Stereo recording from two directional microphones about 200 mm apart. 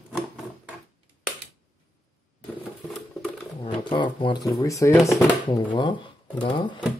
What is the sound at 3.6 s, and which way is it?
Speech, 25° left (ahead or behind).